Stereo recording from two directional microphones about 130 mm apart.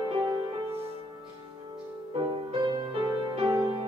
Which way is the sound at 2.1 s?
40° right (ahead or behind).